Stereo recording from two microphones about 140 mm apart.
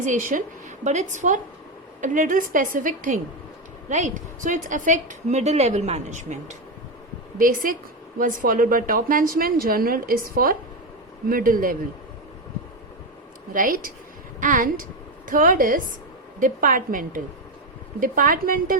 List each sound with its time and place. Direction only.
0.0 s a woman's voice: 65° right (ahead or behind)
0.9 s a woman's voice: 60° right (ahead or behind)
3.8 s a woman's voice: 60° right (ahead or behind)
7.3 s a woman's voice: 85° right
13.5 s a woman's voice: 80° right